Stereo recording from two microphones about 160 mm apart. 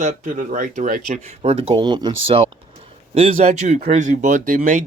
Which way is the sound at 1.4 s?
40° right (ahead or behind).